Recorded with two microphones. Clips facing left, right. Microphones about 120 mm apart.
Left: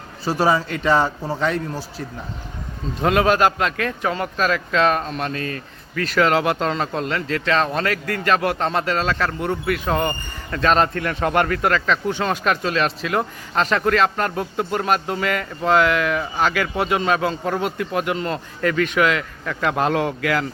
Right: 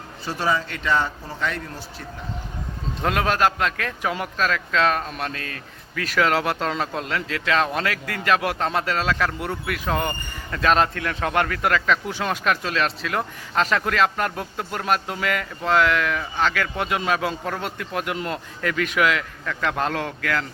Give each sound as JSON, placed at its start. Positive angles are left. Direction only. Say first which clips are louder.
{"t": 0.3, "sound": "a man's voice", "louder": "left 5 dB", "side_deg": 40}
{"t": 3.0, "sound": "speech", "louder": "left 4 dB", "side_deg": 5}